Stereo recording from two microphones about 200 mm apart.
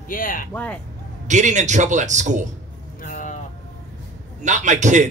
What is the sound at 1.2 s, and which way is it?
A man's voice, 35° right (ahead or behind).